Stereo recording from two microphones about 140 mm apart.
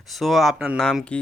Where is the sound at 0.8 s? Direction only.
5° left (ahead or behind).